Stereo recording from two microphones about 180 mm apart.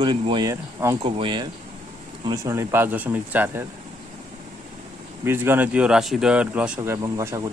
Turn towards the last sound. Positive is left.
turn(degrees=-20)  # may be behind; listen again after turning